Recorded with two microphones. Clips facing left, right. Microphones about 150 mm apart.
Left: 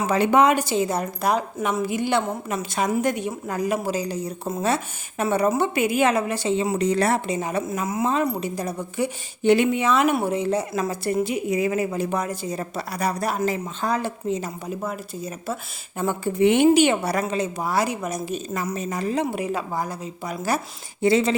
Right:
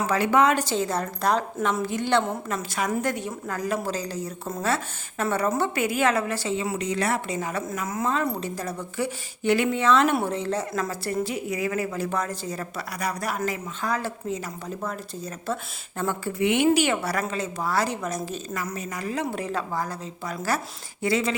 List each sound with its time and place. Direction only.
0.1 s speech: 20° left (ahead or behind)
6.7 s speech: 35° left (ahead or behind)
7.3 s speech: 20° left (ahead or behind)
14.7 s speech: 10° left (ahead or behind)
16.4 s speech: 30° left (ahead or behind)
16.6 s speech: 20° left (ahead or behind)